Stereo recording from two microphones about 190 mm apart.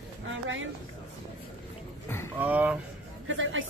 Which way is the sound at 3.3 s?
90° right.